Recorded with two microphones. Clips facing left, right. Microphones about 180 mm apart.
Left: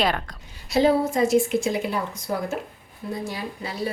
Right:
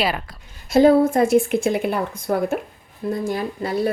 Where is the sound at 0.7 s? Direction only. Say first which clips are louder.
Right 6 dB; 50° right (ahead or behind).